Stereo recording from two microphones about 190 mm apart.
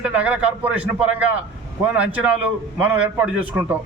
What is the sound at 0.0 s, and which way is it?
A man's voice, 5° right (ahead or behind).